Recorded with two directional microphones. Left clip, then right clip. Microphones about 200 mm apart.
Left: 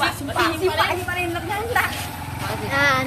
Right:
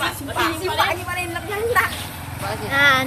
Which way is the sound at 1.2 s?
40° right (ahead or behind).